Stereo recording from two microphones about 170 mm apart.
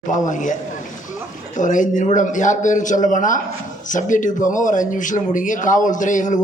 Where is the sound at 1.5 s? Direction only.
50° left (ahead or behind).